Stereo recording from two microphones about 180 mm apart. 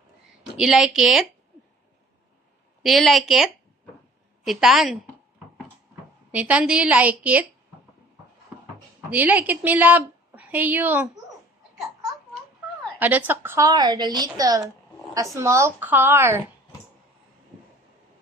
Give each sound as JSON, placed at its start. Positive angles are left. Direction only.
{"t": 0.6, "sound": "a woman's voice", "side_deg": 0}
{"t": 2.8, "sound": "a woman's voice", "side_deg": 0}
{"t": 6.3, "sound": "a woman's voice", "side_deg": -5}
{"t": 9.1, "sound": "a woman's voice", "side_deg": -10}
{"t": 13.0, "sound": "a woman's voice", "side_deg": -10}